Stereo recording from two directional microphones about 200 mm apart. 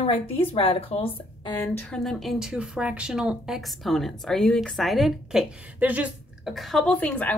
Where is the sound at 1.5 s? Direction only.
5° left (ahead or behind).